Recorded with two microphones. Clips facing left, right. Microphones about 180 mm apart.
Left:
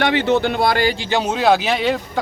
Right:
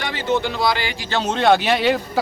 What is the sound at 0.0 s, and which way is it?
Speech, 65° left (ahead or behind).